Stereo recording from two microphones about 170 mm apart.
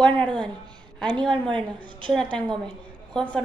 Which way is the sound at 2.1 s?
5° left (ahead or behind).